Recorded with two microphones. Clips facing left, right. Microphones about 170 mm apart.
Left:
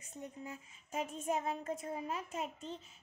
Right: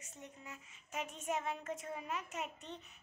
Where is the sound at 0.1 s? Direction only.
35° left (ahead or behind).